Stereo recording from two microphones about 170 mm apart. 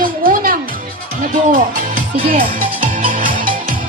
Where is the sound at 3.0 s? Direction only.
55° right (ahead or behind).